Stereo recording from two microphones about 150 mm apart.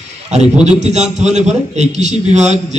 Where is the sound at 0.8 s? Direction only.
50° right (ahead or behind).